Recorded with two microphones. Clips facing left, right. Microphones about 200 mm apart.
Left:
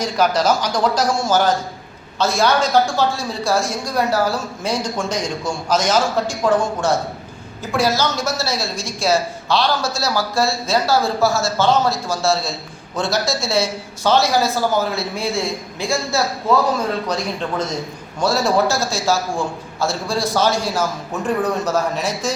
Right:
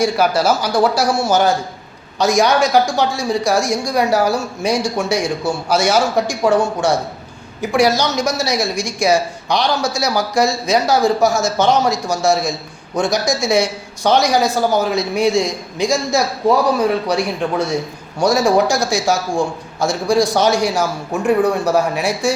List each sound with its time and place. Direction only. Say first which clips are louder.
0.0 s a woman's voice: right 2 dB; 10° right (ahead or behind)